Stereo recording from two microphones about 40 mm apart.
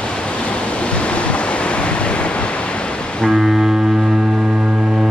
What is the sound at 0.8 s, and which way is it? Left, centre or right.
Waves, left.